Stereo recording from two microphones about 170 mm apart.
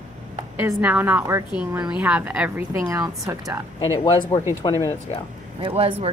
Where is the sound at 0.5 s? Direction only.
10° right (ahead or behind).